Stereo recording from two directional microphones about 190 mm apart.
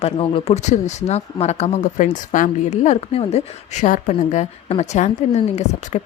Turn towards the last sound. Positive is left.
turn(degrees=35)  # may be behind; listen again after turning